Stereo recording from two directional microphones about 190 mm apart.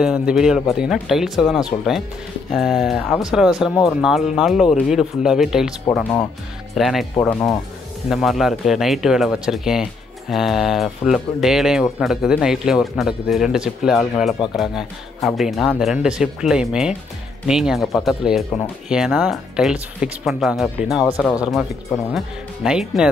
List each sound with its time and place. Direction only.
0.0 s speech: 5° right (ahead or behind)
7.2 s speech: 15° left (ahead or behind)
8.1 s speech: centre (ahead or behind)